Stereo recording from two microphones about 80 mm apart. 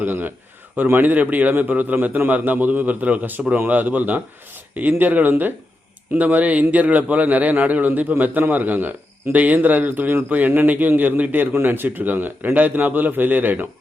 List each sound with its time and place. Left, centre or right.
0.0 s a man's voice: right